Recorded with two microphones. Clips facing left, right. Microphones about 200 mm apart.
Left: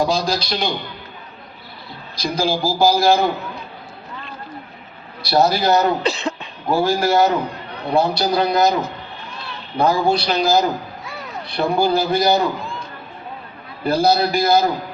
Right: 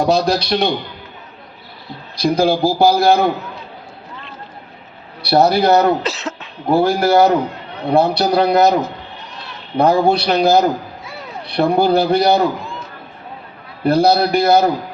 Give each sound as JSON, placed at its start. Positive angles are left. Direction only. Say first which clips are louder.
{"t": 0.0, "sound": "a man's voice", "louder": "right 4 dB", "side_deg": -60}
{"t": 2.1, "sound": "a man's voice", "louder": "right 6 dB", "side_deg": -60}
{"t": 5.2, "sound": "a man's voice", "louder": "right 4 dB", "side_deg": -60}
{"t": 6.0, "sound": "cough", "louder": "left 2 dB", "side_deg": -5}
{"t": 6.7, "sound": "a man's voice", "louder": "right 4 dB", "side_deg": -60}
{"t": 9.7, "sound": "a man's voice", "louder": "right 4 dB", "side_deg": -60}
{"t": 13.8, "sound": "a man's voice", "louder": "right 3 dB", "side_deg": -60}